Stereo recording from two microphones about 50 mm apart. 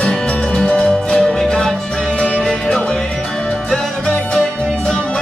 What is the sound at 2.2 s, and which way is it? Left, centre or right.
Music, left.